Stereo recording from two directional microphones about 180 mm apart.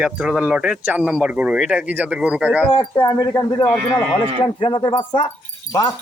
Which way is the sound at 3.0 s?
25° left (ahead or behind).